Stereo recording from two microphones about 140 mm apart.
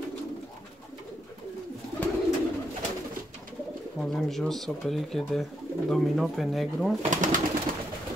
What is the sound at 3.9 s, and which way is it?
Speech, 5° left (ahead or behind).